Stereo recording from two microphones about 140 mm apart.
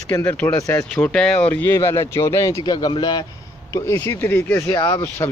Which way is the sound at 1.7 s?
20° left (ahead or behind).